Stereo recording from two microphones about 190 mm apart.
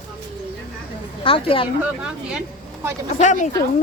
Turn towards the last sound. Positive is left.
turn(degrees=40)  # may be behind; listen again after turning